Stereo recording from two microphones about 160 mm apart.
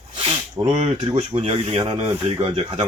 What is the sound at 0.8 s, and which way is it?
Speech, 35° right (ahead or behind).